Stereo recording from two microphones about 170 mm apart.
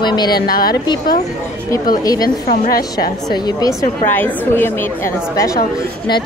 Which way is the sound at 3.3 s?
25° left (ahead or behind).